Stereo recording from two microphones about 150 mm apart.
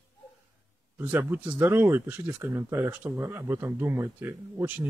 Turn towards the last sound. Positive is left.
turn(degrees=-15)  # may be behind; listen again after turning